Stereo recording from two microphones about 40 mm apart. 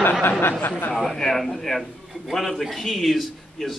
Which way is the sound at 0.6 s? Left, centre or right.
Left.